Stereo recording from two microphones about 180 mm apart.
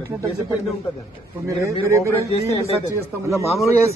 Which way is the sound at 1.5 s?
15° right (ahead or behind).